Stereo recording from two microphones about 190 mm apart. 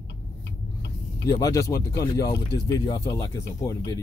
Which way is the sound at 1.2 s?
20° left (ahead or behind).